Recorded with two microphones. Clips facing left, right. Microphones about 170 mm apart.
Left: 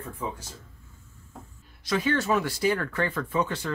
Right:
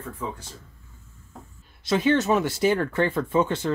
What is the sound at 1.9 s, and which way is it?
Speech, 20° right (ahead or behind).